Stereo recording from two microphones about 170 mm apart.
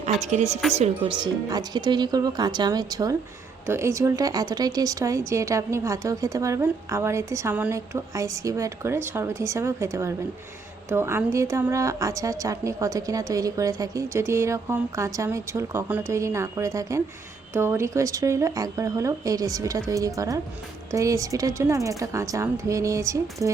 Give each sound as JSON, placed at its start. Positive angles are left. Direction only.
{"t": 0.0, "sound": "a woman's voice", "side_deg": -45}